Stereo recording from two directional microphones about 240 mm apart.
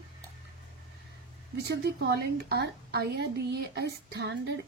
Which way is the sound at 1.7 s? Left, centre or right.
Right.